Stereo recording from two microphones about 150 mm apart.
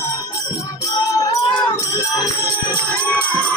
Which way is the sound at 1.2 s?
30° left (ahead or behind).